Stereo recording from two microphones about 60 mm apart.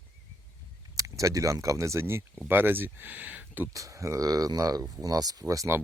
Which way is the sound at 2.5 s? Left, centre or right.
Right.